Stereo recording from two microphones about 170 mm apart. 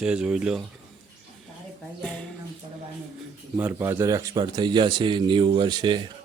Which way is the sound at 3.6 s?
10° right (ahead or behind).